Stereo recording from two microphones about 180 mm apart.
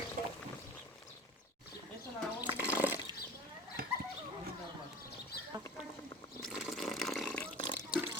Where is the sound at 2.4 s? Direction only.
10° right (ahead or behind).